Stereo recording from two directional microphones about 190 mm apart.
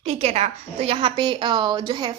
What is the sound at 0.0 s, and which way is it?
A woman's voice, 35° right (ahead or behind).